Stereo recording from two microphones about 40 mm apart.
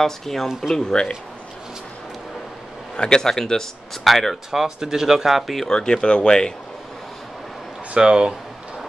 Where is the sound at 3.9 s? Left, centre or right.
Centre.